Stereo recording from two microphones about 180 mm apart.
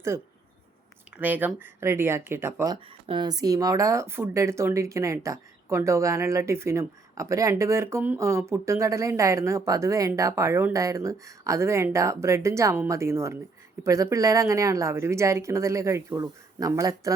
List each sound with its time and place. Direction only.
1.1 s speech: 10° right (ahead or behind)